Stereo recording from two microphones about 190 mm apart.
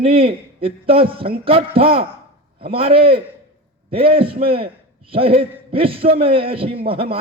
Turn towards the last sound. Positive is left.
turn(degrees=-30)  # may be behind; listen again after turning